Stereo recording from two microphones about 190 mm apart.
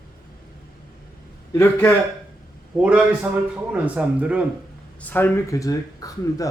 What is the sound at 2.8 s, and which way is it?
A man's voice, 5° right (ahead or behind).